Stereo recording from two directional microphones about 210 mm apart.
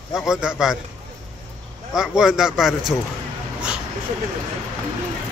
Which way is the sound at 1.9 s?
Centre (ahead or behind).